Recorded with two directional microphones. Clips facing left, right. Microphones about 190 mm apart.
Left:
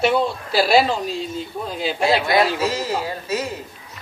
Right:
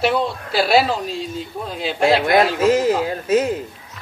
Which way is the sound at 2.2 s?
50° right (ahead or behind).